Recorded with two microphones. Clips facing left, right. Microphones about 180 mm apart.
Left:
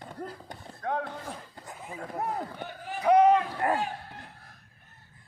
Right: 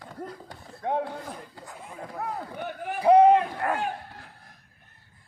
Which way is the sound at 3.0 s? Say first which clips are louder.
Right 4 dB; 30° right (ahead or behind).